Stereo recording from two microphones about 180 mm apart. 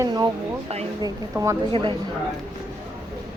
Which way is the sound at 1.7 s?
30° right (ahead or behind).